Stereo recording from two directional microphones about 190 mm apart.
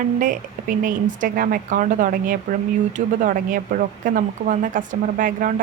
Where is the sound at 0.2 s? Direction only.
45° right (ahead or behind).